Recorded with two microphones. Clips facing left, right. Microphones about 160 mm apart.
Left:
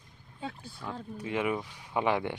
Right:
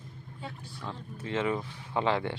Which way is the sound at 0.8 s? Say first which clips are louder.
Left 2 dB; 15° left (ahead or behind).